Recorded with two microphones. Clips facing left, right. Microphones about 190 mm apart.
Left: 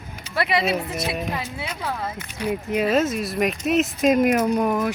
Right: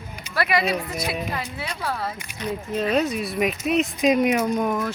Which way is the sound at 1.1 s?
5° left (ahead or behind).